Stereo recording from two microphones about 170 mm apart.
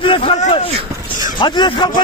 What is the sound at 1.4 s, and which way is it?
Speech, 25° left (ahead or behind).